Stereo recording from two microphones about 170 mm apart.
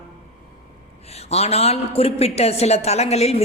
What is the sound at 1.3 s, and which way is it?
A man's voice, 40° left (ahead or behind).